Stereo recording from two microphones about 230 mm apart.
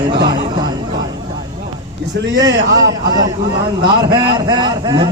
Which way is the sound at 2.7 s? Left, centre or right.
Centre.